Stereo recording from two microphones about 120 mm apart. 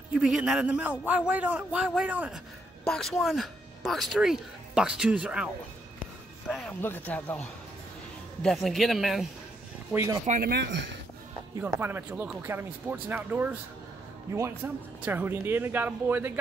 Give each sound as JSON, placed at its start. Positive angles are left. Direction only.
{"t": 0.1, "sound": "a man's voice", "side_deg": -5}
{"t": 2.8, "sound": "a woman's voice", "side_deg": 5}
{"t": 6.5, "sound": "a woman's voice", "side_deg": 5}
{"t": 6.8, "sound": "speech", "side_deg": 15}
{"t": 8.4, "sound": "a woman's voice", "side_deg": 5}
{"t": 10.3, "sound": "speech", "side_deg": -70}
{"t": 11.6, "sound": "a man's voice", "side_deg": -15}